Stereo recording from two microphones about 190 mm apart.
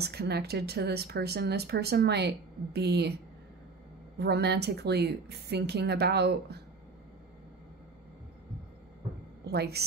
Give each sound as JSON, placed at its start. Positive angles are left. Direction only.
{"t": 0.0, "sound": "speech", "side_deg": -60}
{"t": 4.2, "sound": "speech", "side_deg": -60}
{"t": 9.5, "sound": "speech", "side_deg": -60}